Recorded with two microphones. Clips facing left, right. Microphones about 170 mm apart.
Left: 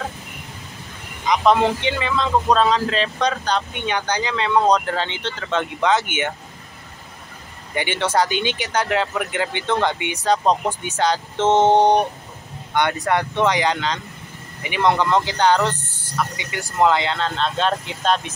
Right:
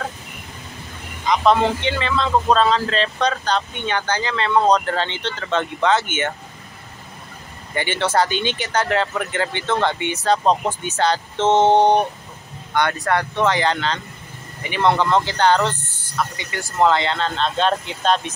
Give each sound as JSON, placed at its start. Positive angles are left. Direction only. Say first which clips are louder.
{"t": 1.2, "sound": "speech", "louder": "even", "side_deg": 10}
{"t": 7.7, "sound": "speech", "louder": "right 1 dB", "side_deg": 15}